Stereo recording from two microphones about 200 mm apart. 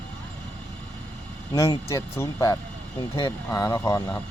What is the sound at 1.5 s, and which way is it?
Speech, 15° left (ahead or behind).